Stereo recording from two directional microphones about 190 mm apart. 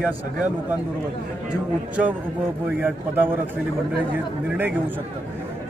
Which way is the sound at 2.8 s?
10° right (ahead or behind).